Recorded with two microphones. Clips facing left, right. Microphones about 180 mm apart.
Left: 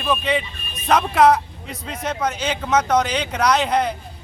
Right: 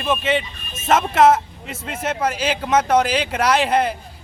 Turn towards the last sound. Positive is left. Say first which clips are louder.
# right 1 dB
turn(degrees=-5)  # may be behind; listen again after turning